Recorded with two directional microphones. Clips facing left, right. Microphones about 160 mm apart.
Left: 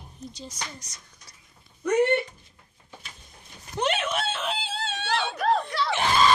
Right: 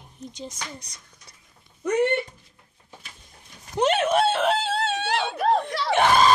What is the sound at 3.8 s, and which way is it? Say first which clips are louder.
Screaming: right 7 dB; 45° right (ahead or behind).